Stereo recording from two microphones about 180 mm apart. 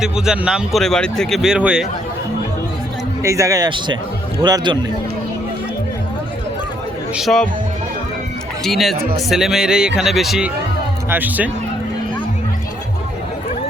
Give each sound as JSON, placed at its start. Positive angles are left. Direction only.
{"t": 0.0, "sound": "speech", "side_deg": -5}
{"t": 3.2, "sound": "a man's voice", "side_deg": -15}
{"t": 7.2, "sound": "speech", "side_deg": 0}
{"t": 8.6, "sound": "speech", "side_deg": 0}